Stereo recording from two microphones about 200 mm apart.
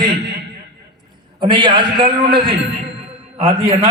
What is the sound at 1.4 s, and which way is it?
A man's voice, 25° right (ahead or behind).